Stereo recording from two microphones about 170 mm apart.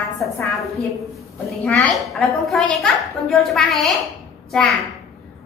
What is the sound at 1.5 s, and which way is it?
A woman's voice, centre (ahead or behind).